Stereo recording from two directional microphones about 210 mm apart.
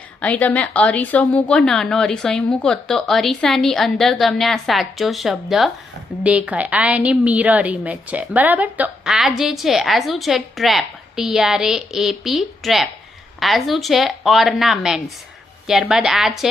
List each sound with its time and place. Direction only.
0.2 s a woman's voice: 5° left (ahead or behind)